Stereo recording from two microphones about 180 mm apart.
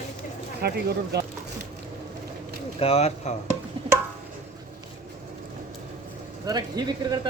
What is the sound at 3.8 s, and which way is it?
Music, 30° right (ahead or behind).